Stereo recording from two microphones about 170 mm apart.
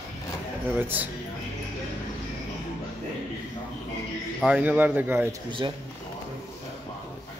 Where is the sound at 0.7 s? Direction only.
10° right (ahead or behind).